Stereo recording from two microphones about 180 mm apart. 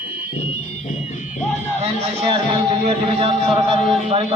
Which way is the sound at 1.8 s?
30° right (ahead or behind).